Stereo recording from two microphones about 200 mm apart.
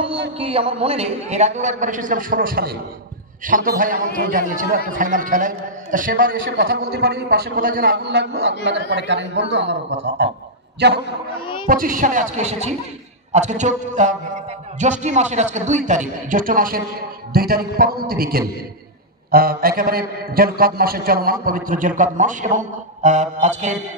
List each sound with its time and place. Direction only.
0.4 s a man's voice: 30° right (ahead or behind); by 11.0 s 55° right (ahead or behind)
11.6 s a man's voice: 45° right (ahead or behind)